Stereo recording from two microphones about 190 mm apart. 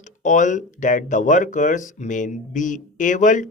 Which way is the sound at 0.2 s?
40° left (ahead or behind).